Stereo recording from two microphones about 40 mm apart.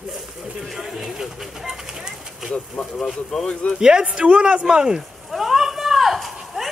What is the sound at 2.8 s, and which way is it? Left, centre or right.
A man's voice, left.